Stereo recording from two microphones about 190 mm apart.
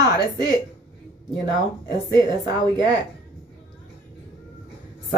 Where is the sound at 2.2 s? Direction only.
20° right (ahead or behind).